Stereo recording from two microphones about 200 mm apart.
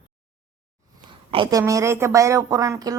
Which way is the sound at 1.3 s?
25° right (ahead or behind).